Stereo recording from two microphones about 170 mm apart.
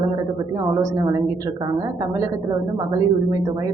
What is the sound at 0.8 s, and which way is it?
Speech, 20° right (ahead or behind).